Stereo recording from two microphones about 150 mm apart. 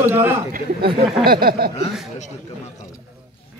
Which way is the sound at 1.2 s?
85° right.